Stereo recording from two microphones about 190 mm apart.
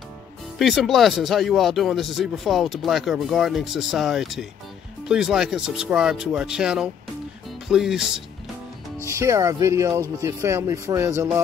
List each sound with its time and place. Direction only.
0.6 s speech: centre (ahead or behind)
9.0 s speech: 15° right (ahead or behind)